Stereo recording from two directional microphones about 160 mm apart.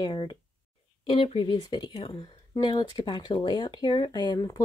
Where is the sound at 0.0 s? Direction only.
25° left (ahead or behind).